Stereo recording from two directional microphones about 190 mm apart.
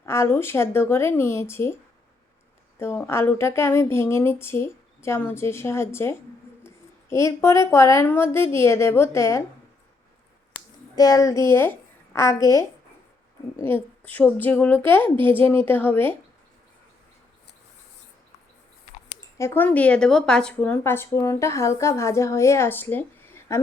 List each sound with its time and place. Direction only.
0.0 s a woman's voice: 15° left (ahead or behind)
2.7 s a woman's voice: 15° left (ahead or behind)
10.9 s a woman's voice: 20° left (ahead or behind)
13.6 s a woman's voice: 10° left (ahead or behind)
19.4 s a woman's voice: 10° left (ahead or behind)